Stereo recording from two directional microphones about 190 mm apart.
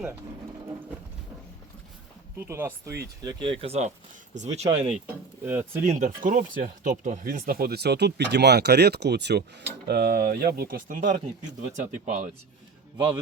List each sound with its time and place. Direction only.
2.5 s speech: 10° right (ahead or behind)
3.2 s speech: 25° right (ahead or behind)
5.5 s speech: 10° right (ahead or behind)
5.8 s speech: 40° right (ahead or behind)